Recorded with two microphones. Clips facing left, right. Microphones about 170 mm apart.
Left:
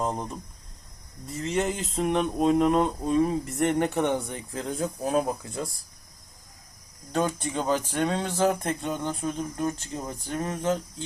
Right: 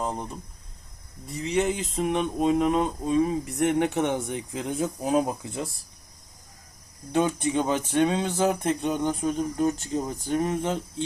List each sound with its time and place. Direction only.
0.0 s speech: centre (ahead or behind)
3.9 s speech: 20° right (ahead or behind)
7.1 s speech: 15° right (ahead or behind)